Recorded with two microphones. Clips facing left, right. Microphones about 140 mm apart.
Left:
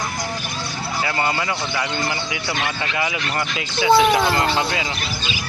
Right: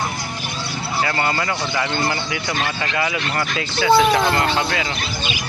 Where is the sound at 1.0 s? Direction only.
15° left (ahead or behind).